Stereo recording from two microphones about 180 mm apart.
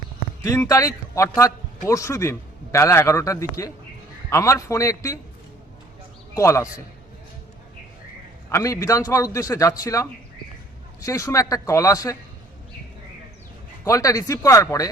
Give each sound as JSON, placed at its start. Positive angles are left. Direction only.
{"t": 0.4, "sound": "a man's voice", "side_deg": 15}
{"t": 6.3, "sound": "a man's voice", "side_deg": 15}
{"t": 8.4, "sound": "a man's voice", "side_deg": 15}
{"t": 13.8, "sound": "a man's voice", "side_deg": 20}